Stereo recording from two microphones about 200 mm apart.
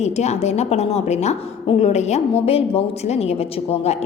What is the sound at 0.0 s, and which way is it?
A woman's voice, 35° left (ahead or behind).